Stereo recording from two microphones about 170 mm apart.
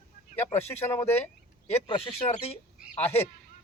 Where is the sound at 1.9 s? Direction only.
35° left (ahead or behind).